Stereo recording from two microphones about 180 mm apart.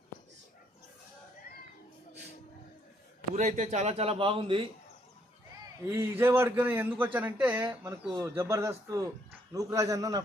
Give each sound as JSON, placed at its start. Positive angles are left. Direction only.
{"t": 3.3, "sound": "a man's voice", "side_deg": -40}
{"t": 6.0, "sound": "a man's voice", "side_deg": -15}